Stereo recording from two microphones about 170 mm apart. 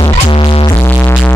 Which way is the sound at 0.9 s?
10° left (ahead or behind).